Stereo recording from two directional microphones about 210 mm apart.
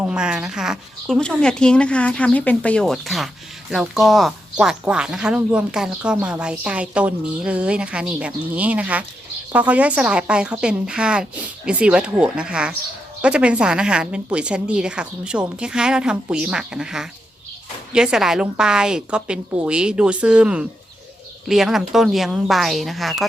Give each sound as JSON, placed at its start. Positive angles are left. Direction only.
{"t": 0.0, "sound": "speech", "side_deg": -5}